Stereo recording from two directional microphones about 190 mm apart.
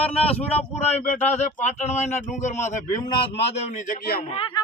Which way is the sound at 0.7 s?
35° left (ahead or behind).